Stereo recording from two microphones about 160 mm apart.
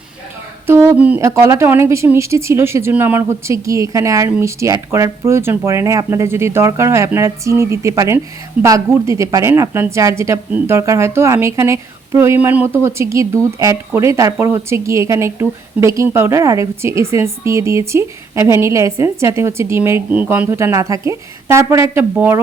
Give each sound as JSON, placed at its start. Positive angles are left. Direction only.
{"t": 0.7, "sound": "a woman's voice", "side_deg": -15}